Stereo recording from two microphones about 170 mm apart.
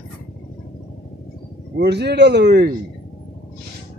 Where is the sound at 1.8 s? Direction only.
75° right (ahead or behind).